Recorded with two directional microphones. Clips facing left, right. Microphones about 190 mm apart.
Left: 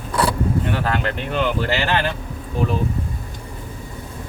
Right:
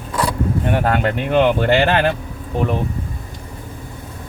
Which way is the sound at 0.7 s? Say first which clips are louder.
Right 4 dB; 50° right (ahead or behind).